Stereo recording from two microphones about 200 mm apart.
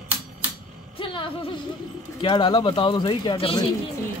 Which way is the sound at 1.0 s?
25° left (ahead or behind).